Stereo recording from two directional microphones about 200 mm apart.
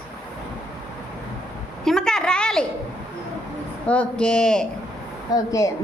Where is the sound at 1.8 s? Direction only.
5° left (ahead or behind).